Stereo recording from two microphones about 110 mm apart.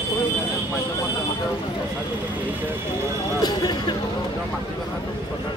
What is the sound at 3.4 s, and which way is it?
Speech, 40° left (ahead or behind).